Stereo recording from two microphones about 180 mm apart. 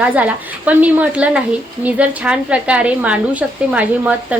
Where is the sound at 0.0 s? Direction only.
10° right (ahead or behind).